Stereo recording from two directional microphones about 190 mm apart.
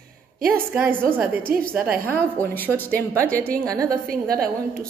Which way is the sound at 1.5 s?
50° right (ahead or behind).